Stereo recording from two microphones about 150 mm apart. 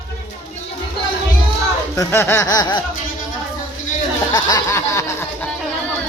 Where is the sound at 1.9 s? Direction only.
15° left (ahead or behind).